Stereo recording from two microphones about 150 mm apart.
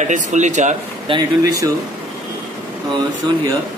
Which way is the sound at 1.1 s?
35° right (ahead or behind).